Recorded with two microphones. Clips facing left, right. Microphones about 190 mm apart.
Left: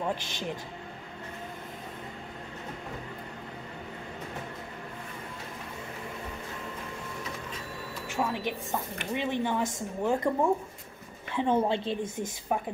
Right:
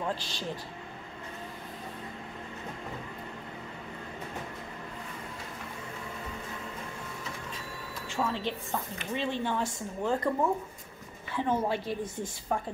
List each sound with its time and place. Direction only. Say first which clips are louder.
0.1 s speech: left 2 dB; 15° left (ahead or behind)
8.2 s a woman's voice: left 1 dB; 15° left (ahead or behind)